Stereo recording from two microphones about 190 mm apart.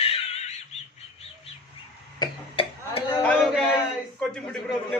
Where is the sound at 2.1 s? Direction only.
25° left (ahead or behind).